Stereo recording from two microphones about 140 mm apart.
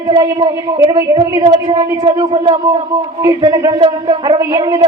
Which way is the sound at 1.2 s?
25° right (ahead or behind).